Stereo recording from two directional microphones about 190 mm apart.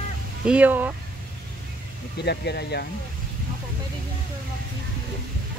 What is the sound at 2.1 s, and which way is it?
Speech, 60° left (ahead or behind).